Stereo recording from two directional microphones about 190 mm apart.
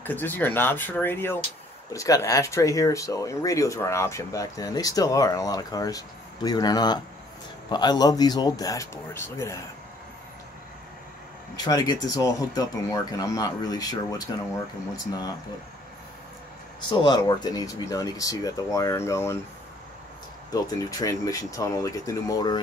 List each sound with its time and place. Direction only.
0.0 s speech: 10° left (ahead or behind)
11.6 s speech: 20° left (ahead or behind)
16.9 s speech: 25° left (ahead or behind)
20.5 s speech: 15° left (ahead or behind)